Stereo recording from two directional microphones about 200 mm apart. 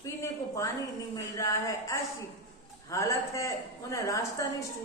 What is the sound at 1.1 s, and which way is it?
A woman's voice, 15° left (ahead or behind).